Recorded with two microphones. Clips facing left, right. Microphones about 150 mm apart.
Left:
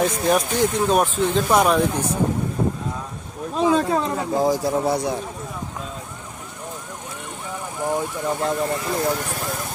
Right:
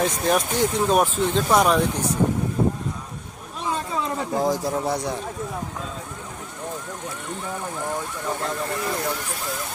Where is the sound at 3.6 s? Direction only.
90° left.